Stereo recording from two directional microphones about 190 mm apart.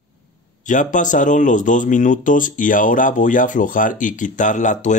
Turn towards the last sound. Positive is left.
turn(degrees=40)  # may be behind; listen again after turning